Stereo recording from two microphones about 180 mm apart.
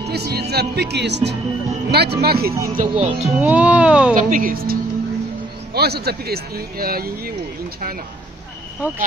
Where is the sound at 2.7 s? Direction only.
45° right (ahead or behind).